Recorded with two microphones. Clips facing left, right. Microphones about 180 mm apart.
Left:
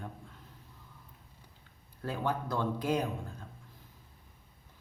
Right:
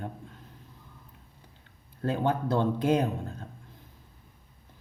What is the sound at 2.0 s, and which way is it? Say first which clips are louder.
Speech: right 6 dB; 25° right (ahead or behind).